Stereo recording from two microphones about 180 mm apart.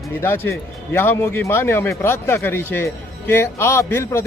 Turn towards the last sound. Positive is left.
turn(degrees=15)  # may be behind; listen again after turning